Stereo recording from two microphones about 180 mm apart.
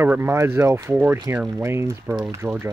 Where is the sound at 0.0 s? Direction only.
15° right (ahead or behind).